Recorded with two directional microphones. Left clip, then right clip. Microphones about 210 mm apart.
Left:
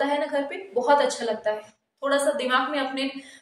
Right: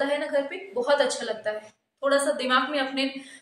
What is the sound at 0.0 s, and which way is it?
A woman's voice, centre (ahead or behind).